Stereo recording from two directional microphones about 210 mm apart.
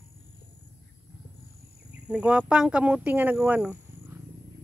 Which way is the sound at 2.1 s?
5° right (ahead or behind).